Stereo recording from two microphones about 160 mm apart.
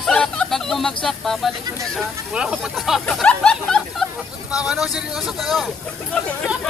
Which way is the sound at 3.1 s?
5° left (ahead or behind).